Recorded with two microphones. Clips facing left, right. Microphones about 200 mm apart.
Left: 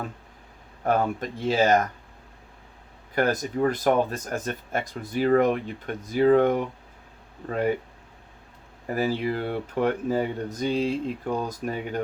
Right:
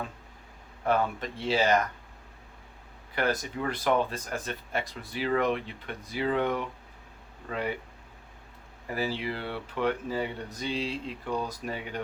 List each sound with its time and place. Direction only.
0.9 s speech: 45° left (ahead or behind)
3.2 s speech: 45° left (ahead or behind)
8.9 s speech: 45° left (ahead or behind)